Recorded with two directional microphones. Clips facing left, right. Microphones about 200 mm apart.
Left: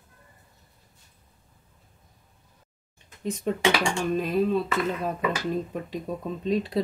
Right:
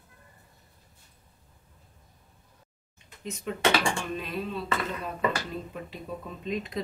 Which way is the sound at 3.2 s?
40° left (ahead or behind).